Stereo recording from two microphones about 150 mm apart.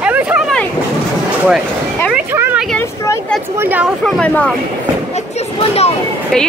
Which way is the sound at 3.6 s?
10° right (ahead or behind).